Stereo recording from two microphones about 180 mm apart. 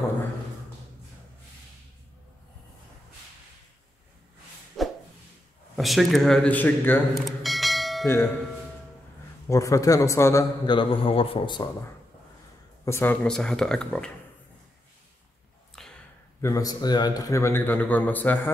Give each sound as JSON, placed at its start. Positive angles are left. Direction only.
{"t": 4.8, "sound": "a sound", "side_deg": 0}
{"t": 5.8, "sound": "speech", "side_deg": 0}
{"t": 7.2, "sound": "bell", "side_deg": 0}
{"t": 9.5, "sound": "a man's voice", "side_deg": 20}
{"t": 12.8, "sound": "speech", "side_deg": 15}
{"t": 15.8, "sound": "a sound", "side_deg": 5}
{"t": 16.3, "sound": "a man's voice", "side_deg": 15}